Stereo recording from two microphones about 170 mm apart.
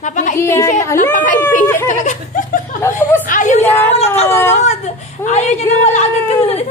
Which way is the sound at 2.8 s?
10° left (ahead or behind).